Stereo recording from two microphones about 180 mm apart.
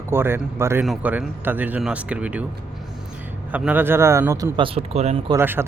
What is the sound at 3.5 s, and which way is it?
Speech, 10° right (ahead or behind).